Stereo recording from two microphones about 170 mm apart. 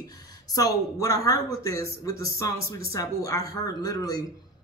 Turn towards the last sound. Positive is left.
turn(degrees=20)  # may be behind; listen again after turning